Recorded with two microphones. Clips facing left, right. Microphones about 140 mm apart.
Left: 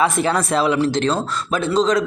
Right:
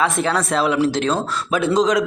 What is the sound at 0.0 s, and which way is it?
A man's voice, centre (ahead or behind).